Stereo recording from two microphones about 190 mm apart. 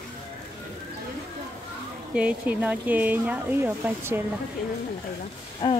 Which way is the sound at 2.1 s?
5° right (ahead or behind).